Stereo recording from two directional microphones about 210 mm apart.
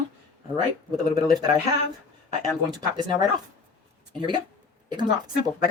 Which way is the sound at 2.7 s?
20° right (ahead or behind).